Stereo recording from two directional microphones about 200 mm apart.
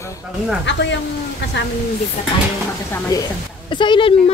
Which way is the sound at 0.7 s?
65° left (ahead or behind).